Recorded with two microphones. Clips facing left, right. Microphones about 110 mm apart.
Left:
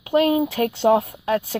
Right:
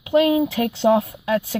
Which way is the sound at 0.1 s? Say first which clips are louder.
Right 1 dB; 40° left (ahead or behind).